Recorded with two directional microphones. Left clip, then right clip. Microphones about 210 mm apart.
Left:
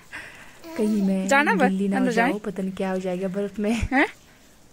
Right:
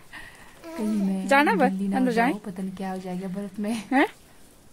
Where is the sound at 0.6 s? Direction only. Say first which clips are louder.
Even; 5° right (ahead or behind).